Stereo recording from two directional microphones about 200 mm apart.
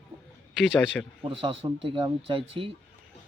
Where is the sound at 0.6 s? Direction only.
Centre (ahead or behind).